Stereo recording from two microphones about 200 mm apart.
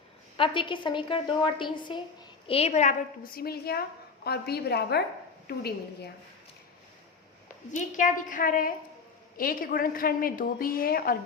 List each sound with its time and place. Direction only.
0.3 s a woman's voice: 25° left (ahead or behind); by 6.1 s 50° left (ahead or behind)
7.7 s a woman's voice: 40° left (ahead or behind)